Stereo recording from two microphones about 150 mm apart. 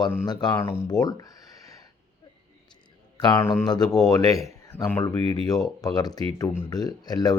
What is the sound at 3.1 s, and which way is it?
A man's voice, 30° left (ahead or behind).